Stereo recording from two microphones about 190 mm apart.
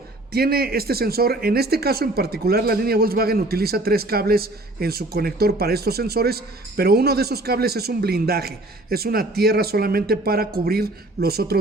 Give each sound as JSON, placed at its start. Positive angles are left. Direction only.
{"t": 0.3, "sound": "speech", "side_deg": -55}